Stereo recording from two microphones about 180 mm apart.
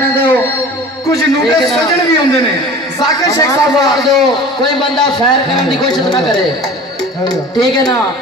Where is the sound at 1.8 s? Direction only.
20° left (ahead or behind).